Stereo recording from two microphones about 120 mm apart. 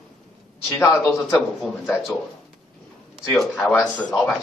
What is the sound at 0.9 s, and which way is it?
Speech, 5° right (ahead or behind).